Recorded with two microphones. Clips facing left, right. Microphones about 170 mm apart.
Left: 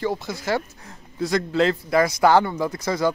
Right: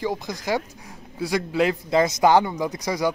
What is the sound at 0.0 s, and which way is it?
A man's voice, 15° right (ahead or behind).